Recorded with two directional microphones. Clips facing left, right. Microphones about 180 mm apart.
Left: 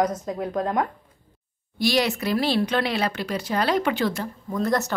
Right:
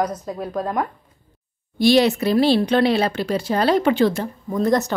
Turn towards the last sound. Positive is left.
turn(degrees=-15)  # may be behind; listen again after turning